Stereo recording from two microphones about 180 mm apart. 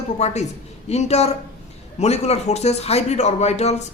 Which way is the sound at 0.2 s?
40° left (ahead or behind).